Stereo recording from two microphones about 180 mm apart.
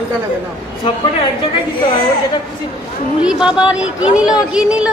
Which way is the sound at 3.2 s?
5° right (ahead or behind).